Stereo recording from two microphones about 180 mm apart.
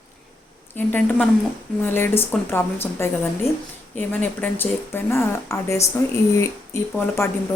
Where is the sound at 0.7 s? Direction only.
10° left (ahead or behind).